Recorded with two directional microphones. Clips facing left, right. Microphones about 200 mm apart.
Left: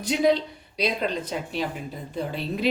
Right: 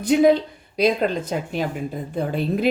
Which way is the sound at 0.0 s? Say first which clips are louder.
Right 6 dB; 55° right (ahead or behind).